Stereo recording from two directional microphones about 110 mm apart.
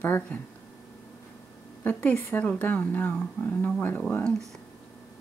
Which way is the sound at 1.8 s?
15° left (ahead or behind).